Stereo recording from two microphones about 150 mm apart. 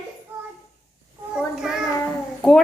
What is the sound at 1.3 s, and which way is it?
Child singing, 5° right (ahead or behind).